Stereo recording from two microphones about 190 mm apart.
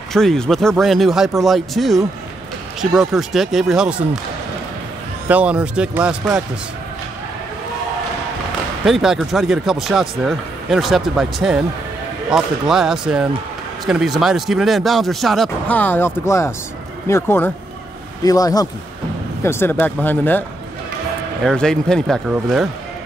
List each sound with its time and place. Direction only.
0.1 s speech: centre (ahead or behind)
5.3 s speech: 5° right (ahead or behind)
8.8 s speech: centre (ahead or behind)
21.5 s speech: 5° left (ahead or behind)